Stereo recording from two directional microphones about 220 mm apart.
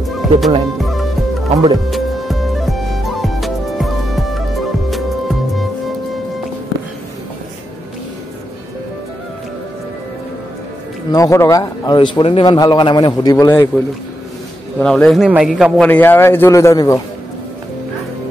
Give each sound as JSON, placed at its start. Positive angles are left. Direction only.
{"t": 0.1, "sound": "music", "side_deg": 0}
{"t": 1.9, "sound": "music", "side_deg": 0}
{"t": 11.1, "sound": "a man's voice", "side_deg": 15}
{"t": 14.8, "sound": "a man's voice", "side_deg": 5}